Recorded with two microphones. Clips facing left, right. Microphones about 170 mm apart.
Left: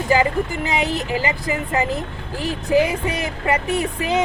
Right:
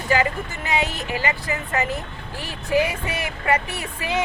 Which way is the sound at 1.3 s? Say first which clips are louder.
Left 3 dB; 30° left (ahead or behind).